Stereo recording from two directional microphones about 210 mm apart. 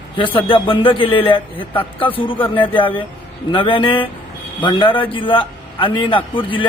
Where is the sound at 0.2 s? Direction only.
25° left (ahead or behind).